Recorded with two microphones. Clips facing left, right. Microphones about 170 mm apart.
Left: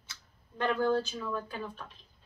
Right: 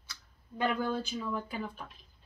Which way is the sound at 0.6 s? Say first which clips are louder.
Left 3 dB; 10° right (ahead or behind).